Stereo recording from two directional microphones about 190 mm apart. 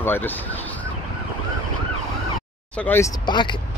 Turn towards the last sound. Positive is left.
turn(degrees=25)  # may be behind; listen again after turning